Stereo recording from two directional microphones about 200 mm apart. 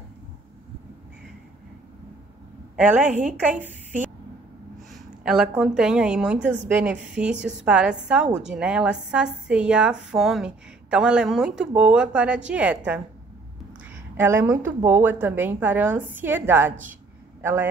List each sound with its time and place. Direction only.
2.7 s a woman's voice: 10° right (ahead or behind)
14.1 s a woman's voice: 10° right (ahead or behind)